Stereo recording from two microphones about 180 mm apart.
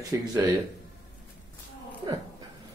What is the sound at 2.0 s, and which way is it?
Speech, 20° right (ahead or behind).